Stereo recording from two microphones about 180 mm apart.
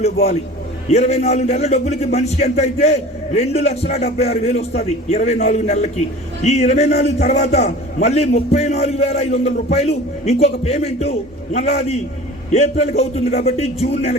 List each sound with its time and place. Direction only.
0.9 s a man's voice: 40° left (ahead or behind)